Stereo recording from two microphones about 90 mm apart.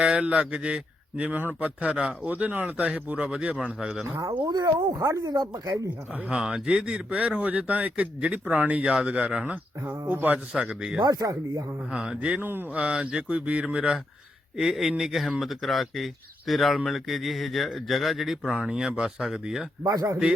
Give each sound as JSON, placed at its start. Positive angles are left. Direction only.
{"t": 0.0, "sound": "speech", "side_deg": -10}
{"t": 4.4, "sound": "speech", "side_deg": -45}
{"t": 6.1, "sound": "speech", "side_deg": -10}
{"t": 10.5, "sound": "speech", "side_deg": -10}
{"t": 11.0, "sound": "speech", "side_deg": -45}
{"t": 11.9, "sound": "speech", "side_deg": -10}
{"t": 12.4, "sound": "speech", "side_deg": -25}
{"t": 12.8, "sound": "speech", "side_deg": -10}
{"t": 19.8, "sound": "speech", "side_deg": -45}